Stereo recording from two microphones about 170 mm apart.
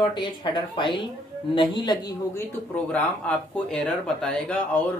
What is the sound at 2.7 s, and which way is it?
Speech, 10° left (ahead or behind).